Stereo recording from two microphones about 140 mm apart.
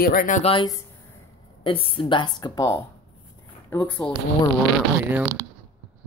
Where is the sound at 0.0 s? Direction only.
90° left.